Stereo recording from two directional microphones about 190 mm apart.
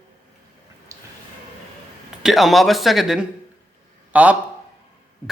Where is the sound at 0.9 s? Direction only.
15° right (ahead or behind).